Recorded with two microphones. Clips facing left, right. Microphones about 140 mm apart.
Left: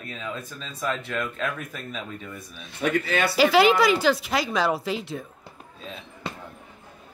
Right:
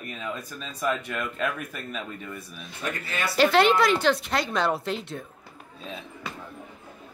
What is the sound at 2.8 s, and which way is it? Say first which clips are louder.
Speech: left 8 dB; 80° left.